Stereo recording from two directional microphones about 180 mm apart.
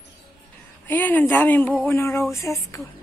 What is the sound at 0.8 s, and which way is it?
Speech, 10° left (ahead or behind).